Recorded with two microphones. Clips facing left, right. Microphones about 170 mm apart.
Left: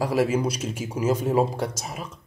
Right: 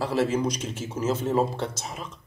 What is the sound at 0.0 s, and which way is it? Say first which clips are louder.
Speech: left 2 dB; 10° left (ahead or behind).